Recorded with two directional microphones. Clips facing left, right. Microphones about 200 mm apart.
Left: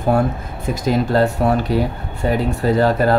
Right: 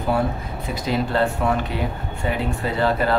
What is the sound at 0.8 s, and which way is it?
Speech, 40° left (ahead or behind).